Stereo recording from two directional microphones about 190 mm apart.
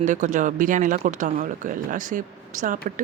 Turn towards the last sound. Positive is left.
turn(degrees=-45)  # may be behind; listen again after turning